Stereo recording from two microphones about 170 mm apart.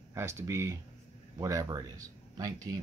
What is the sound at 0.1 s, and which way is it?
Speech, 15° right (ahead or behind).